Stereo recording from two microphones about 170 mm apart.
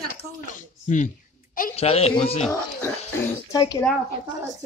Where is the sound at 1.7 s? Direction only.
35° left (ahead or behind).